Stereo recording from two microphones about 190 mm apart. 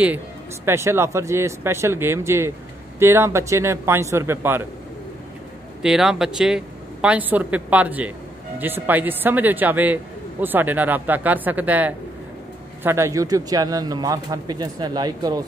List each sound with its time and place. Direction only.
0.7 s speech: 15° right (ahead or behind)
5.8 s speech: 5° right (ahead or behind); by 15.4 s 20° right (ahead or behind)